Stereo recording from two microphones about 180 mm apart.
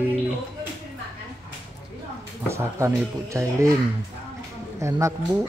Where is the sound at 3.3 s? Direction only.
15° right (ahead or behind).